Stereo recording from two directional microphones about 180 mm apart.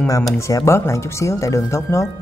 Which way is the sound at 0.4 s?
15° left (ahead or behind).